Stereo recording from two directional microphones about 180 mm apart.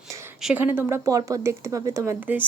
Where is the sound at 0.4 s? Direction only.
10° right (ahead or behind).